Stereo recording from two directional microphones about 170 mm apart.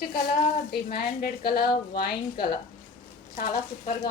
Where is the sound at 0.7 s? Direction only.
65° left (ahead or behind).